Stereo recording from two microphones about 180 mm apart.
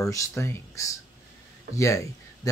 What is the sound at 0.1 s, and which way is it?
Speech, 15° left (ahead or behind).